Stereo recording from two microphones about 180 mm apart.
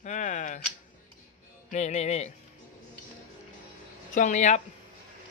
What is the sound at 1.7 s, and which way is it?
Speech, 40° left (ahead or behind).